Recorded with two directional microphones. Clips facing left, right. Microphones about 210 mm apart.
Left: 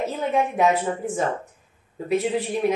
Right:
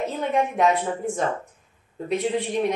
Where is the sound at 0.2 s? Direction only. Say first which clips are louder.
Left 1 dB; centre (ahead or behind).